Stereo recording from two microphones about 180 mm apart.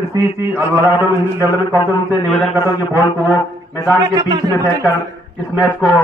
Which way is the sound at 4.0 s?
25° right (ahead or behind).